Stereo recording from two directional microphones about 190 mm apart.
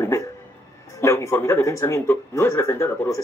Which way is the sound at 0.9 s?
15° left (ahead or behind).